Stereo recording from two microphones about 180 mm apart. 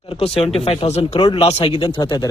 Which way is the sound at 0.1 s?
30° left (ahead or behind).